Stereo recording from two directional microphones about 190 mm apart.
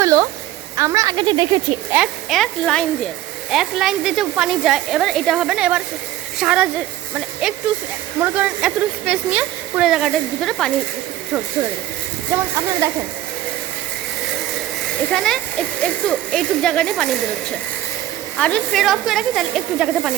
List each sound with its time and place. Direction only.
0.0 s a sound: 15° right (ahead or behind)
0.8 s a woman's voice: 15° right (ahead or behind)
1.9 s speech: 5° right (ahead or behind)
12.3 s speech: 15° right (ahead or behind)
15.1 s speech: centre (ahead or behind)
18.3 s speech: 5° left (ahead or behind)